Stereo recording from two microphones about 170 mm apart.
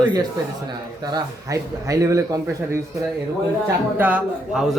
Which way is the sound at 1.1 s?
20° right (ahead or behind).